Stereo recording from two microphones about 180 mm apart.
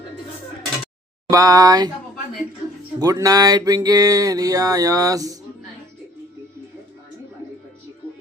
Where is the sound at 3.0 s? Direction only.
20° right (ahead or behind).